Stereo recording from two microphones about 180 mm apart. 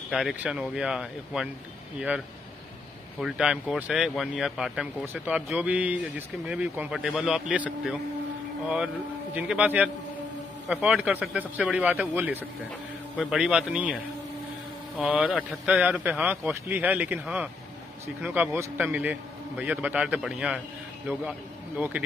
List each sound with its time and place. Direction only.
0.1 s a man's voice: 5° right (ahead or behind)
15.0 s a man's voice: 5° right (ahead or behind)